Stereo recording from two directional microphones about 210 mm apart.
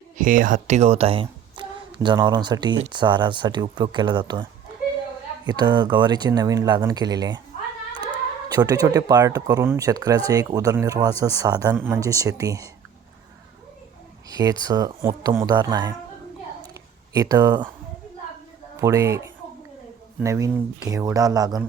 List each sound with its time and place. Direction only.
0.2 s speech: 40° right (ahead or behind); by 4.4 s 20° right (ahead or behind)
5.5 s speech: 20° right (ahead or behind)
14.3 s speech: 20° right (ahead or behind)
17.2 s speech: 15° right (ahead or behind)
18.8 s speech: 15° right (ahead or behind)